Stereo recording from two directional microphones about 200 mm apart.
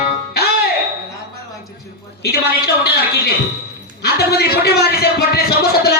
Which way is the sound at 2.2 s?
50° left (ahead or behind).